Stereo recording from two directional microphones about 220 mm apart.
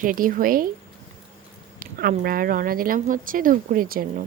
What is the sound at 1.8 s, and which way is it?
Speech, 40° right (ahead or behind).